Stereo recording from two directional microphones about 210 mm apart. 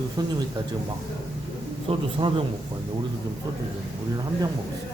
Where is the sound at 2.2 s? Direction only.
25° right (ahead or behind).